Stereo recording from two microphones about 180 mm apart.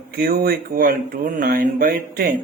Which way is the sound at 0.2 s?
55° right (ahead or behind).